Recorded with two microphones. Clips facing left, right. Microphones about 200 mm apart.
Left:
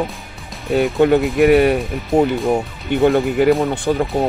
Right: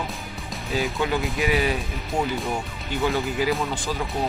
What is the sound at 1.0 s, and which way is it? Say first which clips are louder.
Speech: left 15 dB; 60° left (ahead or behind).